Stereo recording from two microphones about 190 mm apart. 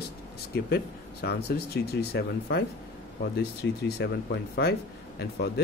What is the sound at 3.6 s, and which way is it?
Speech, 75° left (ahead or behind).